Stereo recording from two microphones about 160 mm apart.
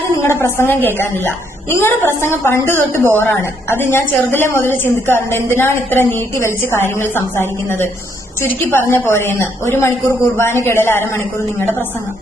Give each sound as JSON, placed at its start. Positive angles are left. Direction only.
{"t": 0.2, "sound": "a woman's voice", "side_deg": 15}
{"t": 8.9, "sound": "a woman's voice", "side_deg": 15}